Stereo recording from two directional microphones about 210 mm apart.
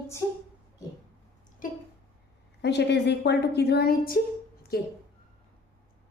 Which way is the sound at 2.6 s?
55° left (ahead or behind).